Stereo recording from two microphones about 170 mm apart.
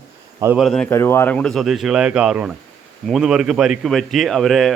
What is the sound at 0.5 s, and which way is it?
Speech, centre (ahead or behind).